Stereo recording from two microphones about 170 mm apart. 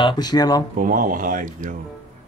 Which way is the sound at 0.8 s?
55° right (ahead or behind).